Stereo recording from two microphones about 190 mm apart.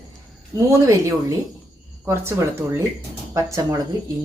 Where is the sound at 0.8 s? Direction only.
15° right (ahead or behind).